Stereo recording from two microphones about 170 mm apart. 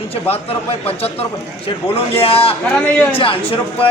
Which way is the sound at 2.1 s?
35° left (ahead or behind).